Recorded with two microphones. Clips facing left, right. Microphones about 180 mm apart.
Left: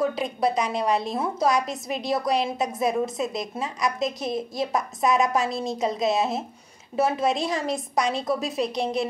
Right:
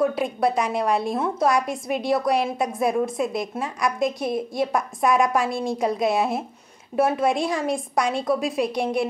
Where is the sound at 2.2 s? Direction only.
5° right (ahead or behind).